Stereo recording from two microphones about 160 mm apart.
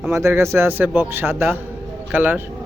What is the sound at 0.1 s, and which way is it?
Speech, 15° right (ahead or behind).